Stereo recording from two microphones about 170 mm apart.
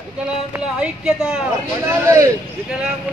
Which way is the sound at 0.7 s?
5° right (ahead or behind).